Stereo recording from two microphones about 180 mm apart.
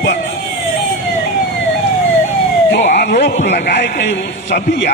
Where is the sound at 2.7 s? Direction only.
65° left (ahead or behind).